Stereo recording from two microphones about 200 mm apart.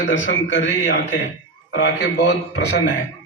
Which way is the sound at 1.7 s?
60° left (ahead or behind).